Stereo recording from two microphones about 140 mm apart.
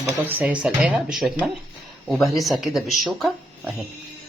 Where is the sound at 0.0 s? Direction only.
15° right (ahead or behind).